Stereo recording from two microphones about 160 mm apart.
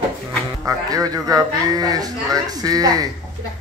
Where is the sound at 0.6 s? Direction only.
20° right (ahead or behind).